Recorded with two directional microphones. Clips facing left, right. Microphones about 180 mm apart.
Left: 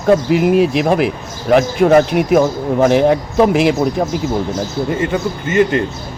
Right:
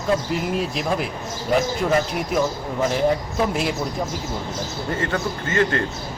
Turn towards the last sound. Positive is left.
turn(degrees=20)  # may be behind; listen again after turning